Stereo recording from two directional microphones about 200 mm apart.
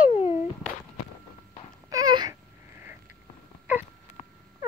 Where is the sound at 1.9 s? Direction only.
20° right (ahead or behind).